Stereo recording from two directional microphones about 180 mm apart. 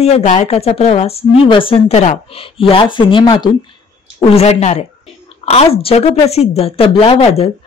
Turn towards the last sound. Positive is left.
turn(degrees=35)  # may be behind; listen again after turning